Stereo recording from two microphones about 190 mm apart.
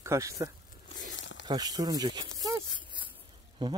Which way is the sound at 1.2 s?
75° left (ahead or behind).